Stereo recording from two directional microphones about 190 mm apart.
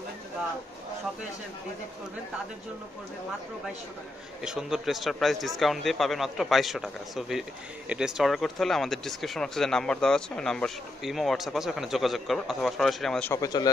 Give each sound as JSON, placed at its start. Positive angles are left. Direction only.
{"t": 4.4, "sound": "speech", "side_deg": -5}
{"t": 13.3, "sound": "a man's voice", "side_deg": 20}